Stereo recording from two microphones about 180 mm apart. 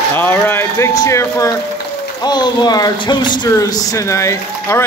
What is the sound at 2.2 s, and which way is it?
Speech, 25° left (ahead or behind).